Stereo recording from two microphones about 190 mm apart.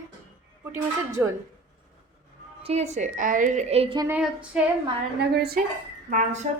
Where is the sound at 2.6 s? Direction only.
35° right (ahead or behind).